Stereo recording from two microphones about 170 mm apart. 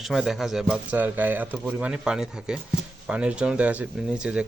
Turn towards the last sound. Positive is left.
turn(degrees=-5)  # may be behind; listen again after turning